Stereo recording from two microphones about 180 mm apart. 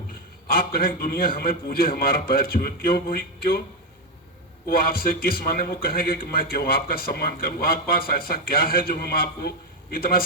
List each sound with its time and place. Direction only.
0.5 s speech: 55° left (ahead or behind)
4.7 s speech: 55° left (ahead or behind)